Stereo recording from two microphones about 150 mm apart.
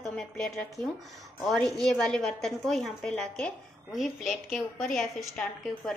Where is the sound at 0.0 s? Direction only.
5° left (ahead or behind).